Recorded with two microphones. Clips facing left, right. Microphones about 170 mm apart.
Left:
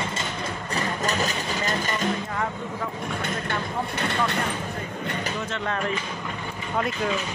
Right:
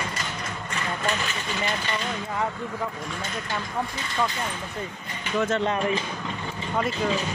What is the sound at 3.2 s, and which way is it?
Speech, 65° left (ahead or behind).